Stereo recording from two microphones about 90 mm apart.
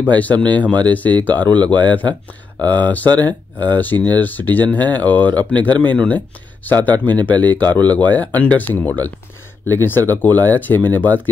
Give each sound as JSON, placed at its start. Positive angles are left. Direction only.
{"t": 0.0, "sound": "speech", "side_deg": 15}